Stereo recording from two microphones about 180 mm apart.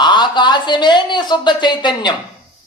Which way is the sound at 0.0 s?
25° left (ahead or behind).